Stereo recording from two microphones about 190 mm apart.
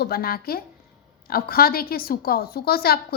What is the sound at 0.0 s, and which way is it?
A woman's voice, 55° left (ahead or behind).